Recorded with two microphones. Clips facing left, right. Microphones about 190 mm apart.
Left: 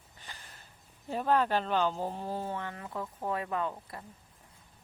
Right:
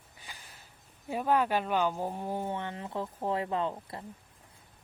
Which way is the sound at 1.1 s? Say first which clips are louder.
Even; 10° right (ahead or behind).